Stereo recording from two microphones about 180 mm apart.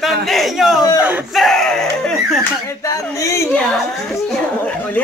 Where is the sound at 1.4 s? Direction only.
Centre (ahead or behind).